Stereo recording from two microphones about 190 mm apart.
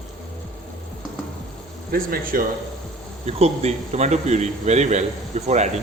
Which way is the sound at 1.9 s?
50° right (ahead or behind).